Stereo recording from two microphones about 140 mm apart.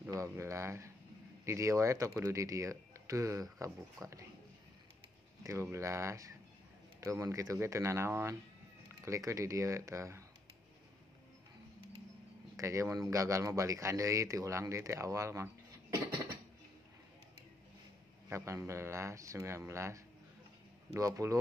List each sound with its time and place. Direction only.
0.1 s speech: 20° right (ahead or behind)
5.4 s speech: 20° right (ahead or behind)
12.5 s speech: 20° right (ahead or behind)
18.3 s speech: 20° right (ahead or behind)